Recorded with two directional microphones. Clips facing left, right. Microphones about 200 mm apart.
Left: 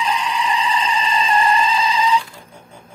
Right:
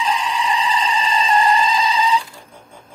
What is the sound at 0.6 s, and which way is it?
Goat, 35° right (ahead or behind).